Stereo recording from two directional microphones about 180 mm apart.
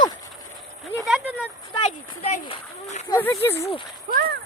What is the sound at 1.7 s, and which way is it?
Speech, 35° left (ahead or behind).